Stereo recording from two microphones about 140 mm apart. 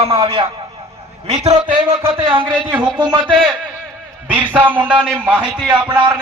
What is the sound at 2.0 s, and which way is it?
Speech, 40° right (ahead or behind).